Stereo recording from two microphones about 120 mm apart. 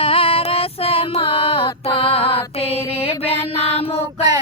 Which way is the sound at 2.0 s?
50° left (ahead or behind).